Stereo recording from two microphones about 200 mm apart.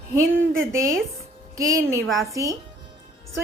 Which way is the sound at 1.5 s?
15° right (ahead or behind).